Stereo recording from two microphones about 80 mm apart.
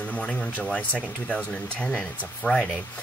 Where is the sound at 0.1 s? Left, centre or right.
Centre.